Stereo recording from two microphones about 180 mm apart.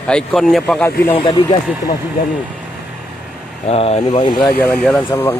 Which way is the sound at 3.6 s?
35° left (ahead or behind).